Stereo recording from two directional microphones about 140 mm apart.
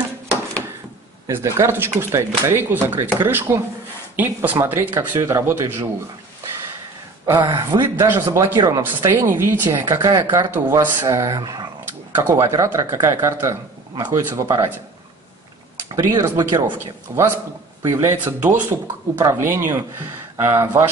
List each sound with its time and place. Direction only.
1.3 s speech: 20° right (ahead or behind)
7.3 s speech: 30° right (ahead or behind)
7.9 s speech: 15° right (ahead or behind)
16.0 s speech: 25° right (ahead or behind)
16.6 s speech: 15° right (ahead or behind)